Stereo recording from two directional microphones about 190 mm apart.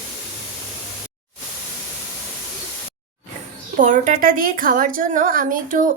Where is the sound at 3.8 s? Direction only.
40° right (ahead or behind).